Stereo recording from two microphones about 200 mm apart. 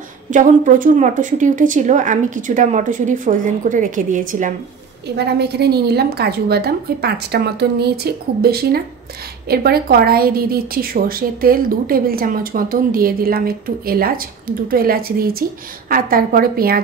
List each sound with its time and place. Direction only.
0.3 s a woman's voice: 40° right (ahead or behind)
5.0 s a woman's voice: 55° right (ahead or behind)